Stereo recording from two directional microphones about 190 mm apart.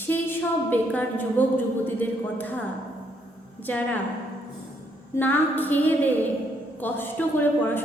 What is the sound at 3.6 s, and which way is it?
Speech, 10° left (ahead or behind).